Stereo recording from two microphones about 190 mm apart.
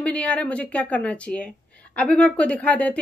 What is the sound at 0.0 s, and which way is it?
Speech, 5° left (ahead or behind).